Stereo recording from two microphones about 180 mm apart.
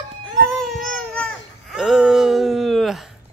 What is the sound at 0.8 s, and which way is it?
Baby cry, 5° left (ahead or behind).